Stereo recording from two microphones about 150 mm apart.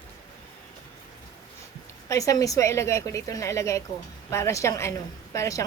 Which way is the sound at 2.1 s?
20° left (ahead or behind).